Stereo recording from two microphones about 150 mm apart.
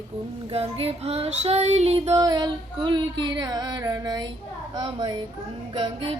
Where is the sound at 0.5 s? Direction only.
40° right (ahead or behind).